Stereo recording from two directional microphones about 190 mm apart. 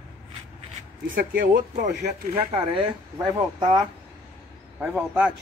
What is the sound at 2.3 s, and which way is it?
Speech, 30° right (ahead or behind).